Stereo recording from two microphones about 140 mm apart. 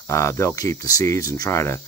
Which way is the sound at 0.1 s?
20° left (ahead or behind).